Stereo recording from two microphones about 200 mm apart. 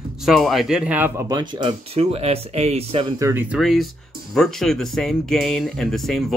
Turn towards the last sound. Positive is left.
turn(degrees=0)  # may be behind; listen again after turning